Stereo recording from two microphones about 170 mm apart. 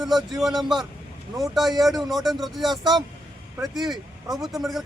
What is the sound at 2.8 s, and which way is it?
Speech, 25° right (ahead or behind).